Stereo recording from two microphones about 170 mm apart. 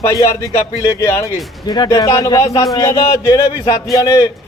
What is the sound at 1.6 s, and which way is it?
Speech, 25° left (ahead or behind).